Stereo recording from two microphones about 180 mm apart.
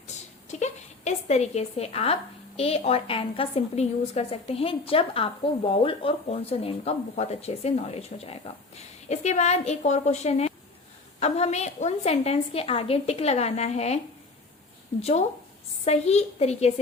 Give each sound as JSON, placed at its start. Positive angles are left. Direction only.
{"t": 0.1, "sound": "a sound", "side_deg": 40}
{"t": 2.6, "sound": "a woman's voice", "side_deg": 35}
{"t": 15.8, "sound": "a woman's voice", "side_deg": 35}